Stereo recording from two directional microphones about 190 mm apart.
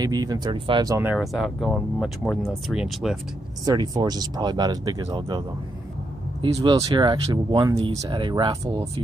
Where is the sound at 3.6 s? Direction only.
20° right (ahead or behind).